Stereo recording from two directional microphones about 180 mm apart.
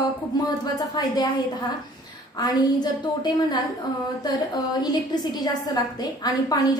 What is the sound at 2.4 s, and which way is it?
A woman's voice, 20° left (ahead or behind).